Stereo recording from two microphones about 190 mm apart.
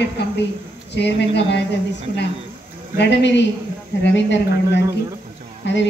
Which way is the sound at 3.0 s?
65° left (ahead or behind).